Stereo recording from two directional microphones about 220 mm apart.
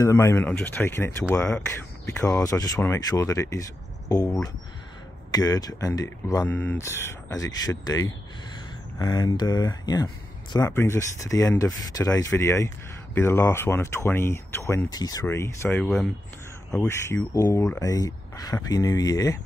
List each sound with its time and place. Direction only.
0.0 s speech: 15° left (ahead or behind)
2.1 s speech: 15° left (ahead or behind)